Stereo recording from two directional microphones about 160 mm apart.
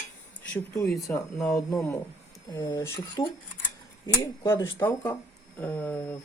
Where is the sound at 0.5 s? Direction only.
20° left (ahead or behind).